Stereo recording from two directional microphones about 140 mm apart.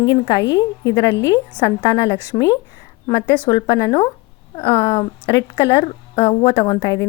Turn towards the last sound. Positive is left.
turn(degrees=35)  # may be behind; listen again after turning